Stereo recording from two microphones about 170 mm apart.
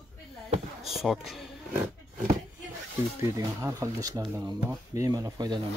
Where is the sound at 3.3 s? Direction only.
20° right (ahead or behind).